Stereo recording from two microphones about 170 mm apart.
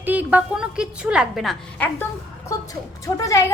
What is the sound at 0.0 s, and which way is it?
A woman's voice, 10° right (ahead or behind).